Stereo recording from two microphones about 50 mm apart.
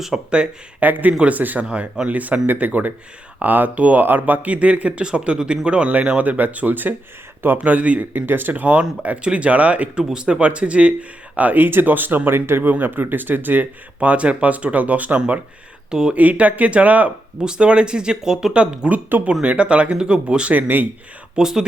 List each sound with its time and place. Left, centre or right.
0.1 s speech: centre
0.8 s speech: right
8.1 s speech: right
9.0 s speech: right
10.0 s speech: centre
11.3 s speech: right
15.9 s speech: centre
16.1 s speech: right
17.4 s speech: centre
18.9 s speech: right
20.6 s speech: right
21.3 s speech: centre